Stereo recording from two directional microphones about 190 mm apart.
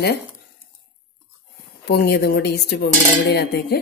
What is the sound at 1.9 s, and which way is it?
Speech, 60° left (ahead or behind).